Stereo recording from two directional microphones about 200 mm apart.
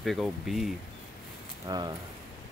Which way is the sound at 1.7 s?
15° right (ahead or behind).